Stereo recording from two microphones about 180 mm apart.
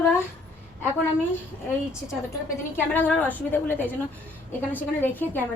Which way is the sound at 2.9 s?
10° left (ahead or behind).